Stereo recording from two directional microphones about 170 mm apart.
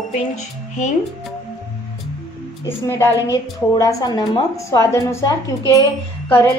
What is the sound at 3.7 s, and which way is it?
A woman's voice, 20° left (ahead or behind).